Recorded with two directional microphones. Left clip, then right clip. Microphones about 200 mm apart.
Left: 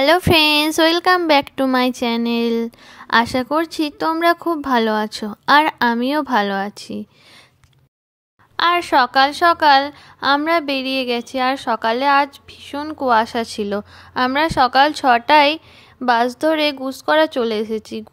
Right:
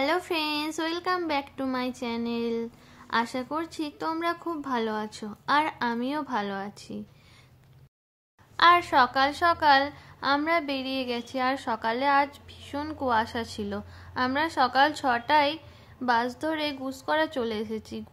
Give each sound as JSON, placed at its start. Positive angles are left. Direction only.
{"t": 0.0, "sound": "a woman's voice", "side_deg": 50}
{"t": 8.5, "sound": "a woman's voice", "side_deg": 40}